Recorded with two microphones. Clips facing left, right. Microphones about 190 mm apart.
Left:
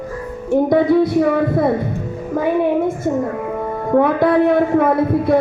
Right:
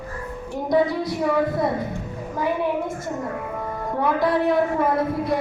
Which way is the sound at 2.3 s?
60° left (ahead or behind).